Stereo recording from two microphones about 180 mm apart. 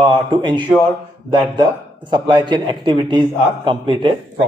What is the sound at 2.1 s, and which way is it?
Speech, 25° right (ahead or behind).